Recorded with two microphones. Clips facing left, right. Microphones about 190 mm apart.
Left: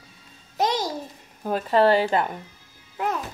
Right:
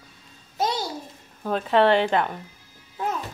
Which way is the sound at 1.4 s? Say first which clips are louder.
Even; 5° left (ahead or behind).